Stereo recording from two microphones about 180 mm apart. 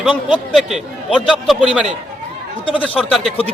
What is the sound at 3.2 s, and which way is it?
Speech, 30° left (ahead or behind).